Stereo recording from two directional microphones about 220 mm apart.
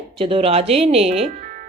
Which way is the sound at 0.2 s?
25° right (ahead or behind).